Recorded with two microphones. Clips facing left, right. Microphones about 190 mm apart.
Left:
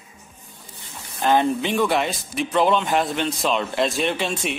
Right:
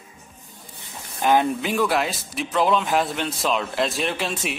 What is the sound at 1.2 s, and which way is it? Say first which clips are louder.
Speech: left 1 dB; 5° right (ahead or behind).